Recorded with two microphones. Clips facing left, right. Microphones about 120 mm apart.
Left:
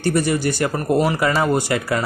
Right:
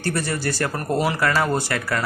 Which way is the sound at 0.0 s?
15° left (ahead or behind).